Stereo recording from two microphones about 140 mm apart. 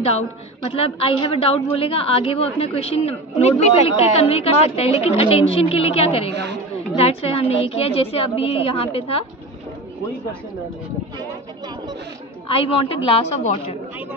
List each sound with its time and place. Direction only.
0.7 s a woman's voice: 45° left (ahead or behind)
12.4 s a woman's voice: 40° left (ahead or behind)